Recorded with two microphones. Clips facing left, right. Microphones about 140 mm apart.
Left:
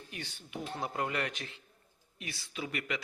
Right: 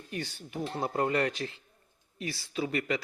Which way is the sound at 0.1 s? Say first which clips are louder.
Right 7 dB; 40° right (ahead or behind).